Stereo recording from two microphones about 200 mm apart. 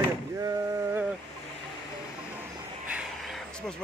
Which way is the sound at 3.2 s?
Centre (ahead or behind).